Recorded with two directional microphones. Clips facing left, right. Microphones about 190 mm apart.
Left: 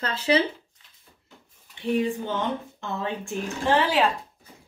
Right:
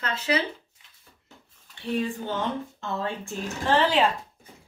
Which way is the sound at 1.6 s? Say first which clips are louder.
Left 4 dB; 15° left (ahead or behind).